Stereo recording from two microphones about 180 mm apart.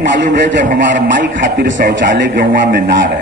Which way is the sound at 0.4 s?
75° right (ahead or behind).